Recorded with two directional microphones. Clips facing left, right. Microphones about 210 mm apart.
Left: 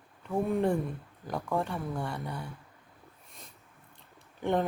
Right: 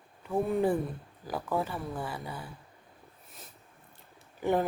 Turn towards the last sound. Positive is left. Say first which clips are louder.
# right 1 dB
turn(degrees=-5)  # may be behind; listen again after turning